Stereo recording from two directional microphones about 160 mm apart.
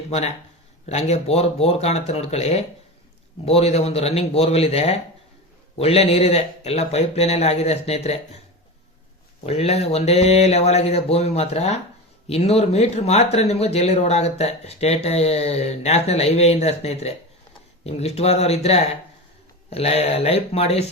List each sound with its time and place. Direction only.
0.9 s speech: 45° left (ahead or behind)
9.5 s speech: 40° left (ahead or behind)